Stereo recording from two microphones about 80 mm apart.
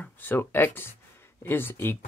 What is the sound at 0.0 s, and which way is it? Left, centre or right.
Speech, left.